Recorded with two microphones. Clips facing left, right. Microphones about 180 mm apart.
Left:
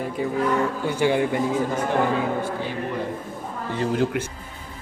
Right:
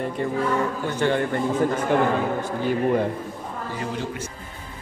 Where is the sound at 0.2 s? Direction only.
5° left (ahead or behind).